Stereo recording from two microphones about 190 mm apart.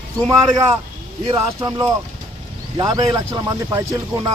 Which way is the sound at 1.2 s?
25° right (ahead or behind).